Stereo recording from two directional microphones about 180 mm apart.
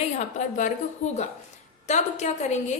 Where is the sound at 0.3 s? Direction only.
45° left (ahead or behind).